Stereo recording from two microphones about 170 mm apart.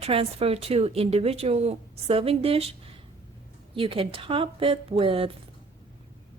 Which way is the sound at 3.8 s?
30° right (ahead or behind).